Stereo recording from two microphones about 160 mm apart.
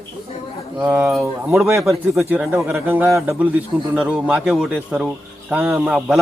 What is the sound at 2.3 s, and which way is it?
A man's voice, 15° right (ahead or behind).